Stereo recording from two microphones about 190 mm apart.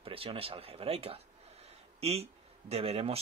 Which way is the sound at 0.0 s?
30° right (ahead or behind).